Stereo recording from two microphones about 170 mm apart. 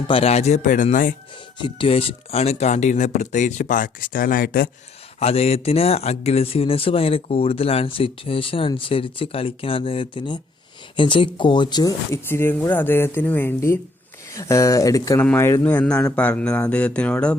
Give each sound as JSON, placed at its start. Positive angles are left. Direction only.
{"t": 0.1, "sound": "speech", "side_deg": 35}
{"t": 1.5, "sound": "speech", "side_deg": 30}
{"t": 5.2, "sound": "speech", "side_deg": 35}